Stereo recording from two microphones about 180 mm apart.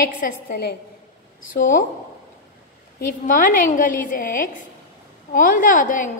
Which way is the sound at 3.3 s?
50° left (ahead or behind).